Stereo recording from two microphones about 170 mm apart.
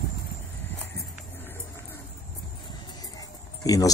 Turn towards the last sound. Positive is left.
turn(degrees=20)  # may be behind; listen again after turning